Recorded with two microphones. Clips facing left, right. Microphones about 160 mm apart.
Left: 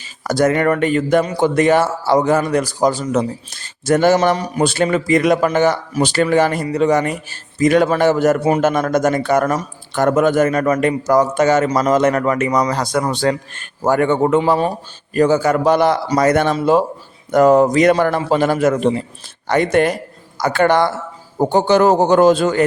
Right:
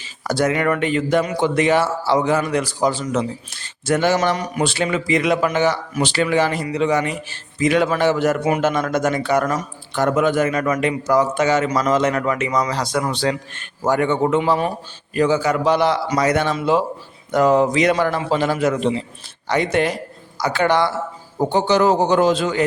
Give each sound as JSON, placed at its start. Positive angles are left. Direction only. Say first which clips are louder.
{"t": 0.0, "sound": "a man's voice", "louder": "left 4 dB", "side_deg": 45}
{"t": 8.4, "sound": "a man's voice", "louder": "left 4 dB", "side_deg": 35}
{"t": 8.6, "sound": "a man's voice", "louder": "left 4 dB", "side_deg": 45}